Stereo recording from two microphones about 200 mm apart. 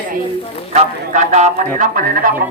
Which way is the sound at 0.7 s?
35° right (ahead or behind).